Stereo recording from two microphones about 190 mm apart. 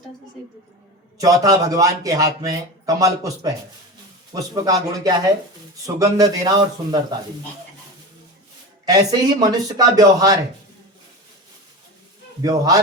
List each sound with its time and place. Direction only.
1.2 s speech: 20° right (ahead or behind)
8.9 s speech: 20° right (ahead or behind)
12.4 s speech: 20° right (ahead or behind)